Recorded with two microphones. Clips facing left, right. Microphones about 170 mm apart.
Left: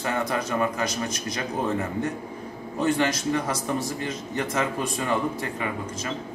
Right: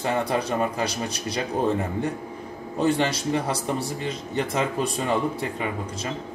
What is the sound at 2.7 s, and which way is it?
A man's voice, 35° right (ahead or behind).